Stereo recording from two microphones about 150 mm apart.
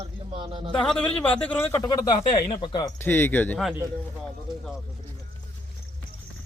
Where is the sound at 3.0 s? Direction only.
15° left (ahead or behind).